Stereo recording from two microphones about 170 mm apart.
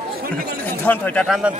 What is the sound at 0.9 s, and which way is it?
Speech, 10° left (ahead or behind).